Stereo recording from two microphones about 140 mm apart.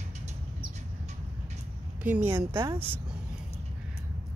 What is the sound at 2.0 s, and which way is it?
Speech, 15° right (ahead or behind).